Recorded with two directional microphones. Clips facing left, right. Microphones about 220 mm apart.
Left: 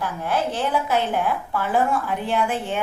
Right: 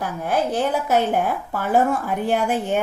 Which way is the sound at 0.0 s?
40° right (ahead or behind).